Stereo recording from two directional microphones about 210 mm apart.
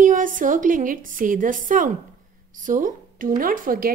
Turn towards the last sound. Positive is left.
turn(degrees=-40)  # may be behind; listen again after turning